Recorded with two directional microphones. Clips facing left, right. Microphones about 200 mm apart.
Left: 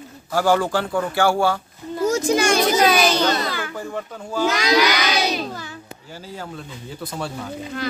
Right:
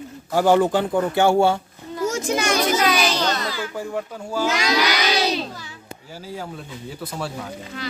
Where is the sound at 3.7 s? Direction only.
5° right (ahead or behind).